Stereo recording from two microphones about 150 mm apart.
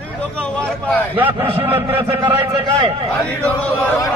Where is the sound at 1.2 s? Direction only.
10° right (ahead or behind).